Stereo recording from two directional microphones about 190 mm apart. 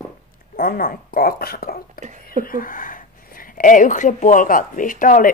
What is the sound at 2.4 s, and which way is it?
Speech, 50° left (ahead or behind).